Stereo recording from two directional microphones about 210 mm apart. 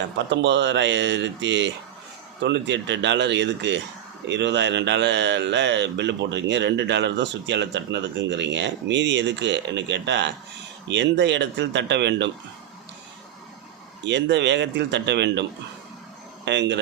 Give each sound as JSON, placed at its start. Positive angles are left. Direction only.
{"t": 0.3, "sound": "a man's voice", "side_deg": -55}
{"t": 14.0, "sound": "a man's voice", "side_deg": -55}
{"t": 16.5, "sound": "a man's voice", "side_deg": -55}